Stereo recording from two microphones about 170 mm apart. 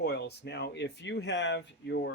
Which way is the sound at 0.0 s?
75° left (ahead or behind).